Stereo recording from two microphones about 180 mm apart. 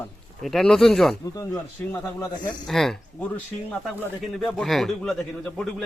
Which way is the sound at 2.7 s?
Centre (ahead or behind).